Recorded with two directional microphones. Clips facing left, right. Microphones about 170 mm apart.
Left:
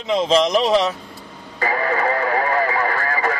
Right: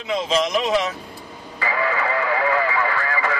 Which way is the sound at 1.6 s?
40° left (ahead or behind).